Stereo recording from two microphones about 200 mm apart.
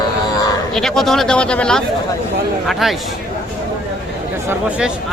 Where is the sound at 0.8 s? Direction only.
Centre (ahead or behind).